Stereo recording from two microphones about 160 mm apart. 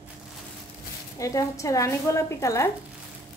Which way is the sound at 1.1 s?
20° left (ahead or behind).